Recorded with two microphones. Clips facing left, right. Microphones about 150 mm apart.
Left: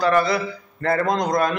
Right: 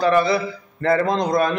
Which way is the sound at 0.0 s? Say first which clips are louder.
Right 2 dB; 25° right (ahead or behind).